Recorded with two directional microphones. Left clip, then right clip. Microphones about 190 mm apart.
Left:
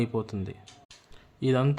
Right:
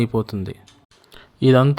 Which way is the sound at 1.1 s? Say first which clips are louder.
Right 11 dB; 40° right (ahead or behind).